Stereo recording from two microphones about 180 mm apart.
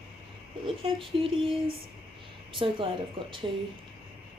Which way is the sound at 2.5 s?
30° right (ahead or behind).